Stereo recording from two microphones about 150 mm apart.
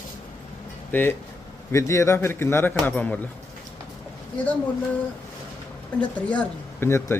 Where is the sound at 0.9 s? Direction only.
10° left (ahead or behind).